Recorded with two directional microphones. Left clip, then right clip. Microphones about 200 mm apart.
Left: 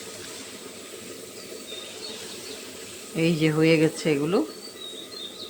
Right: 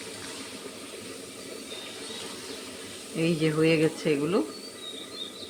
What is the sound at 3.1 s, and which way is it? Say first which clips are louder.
Speech: left 3 dB; 25° left (ahead or behind).